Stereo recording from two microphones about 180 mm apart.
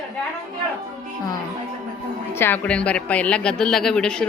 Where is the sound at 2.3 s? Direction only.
10° left (ahead or behind).